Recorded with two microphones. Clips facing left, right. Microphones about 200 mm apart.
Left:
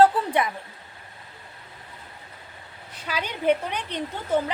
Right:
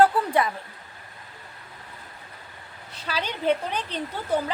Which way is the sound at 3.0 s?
10° left (ahead or behind).